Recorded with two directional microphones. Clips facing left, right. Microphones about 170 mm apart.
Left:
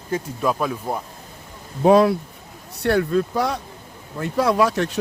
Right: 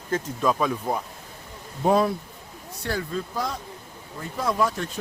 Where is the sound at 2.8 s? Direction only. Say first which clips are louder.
Left 10 dB; 65° left (ahead or behind).